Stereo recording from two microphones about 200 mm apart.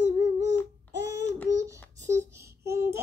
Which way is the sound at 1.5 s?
15° right (ahead or behind).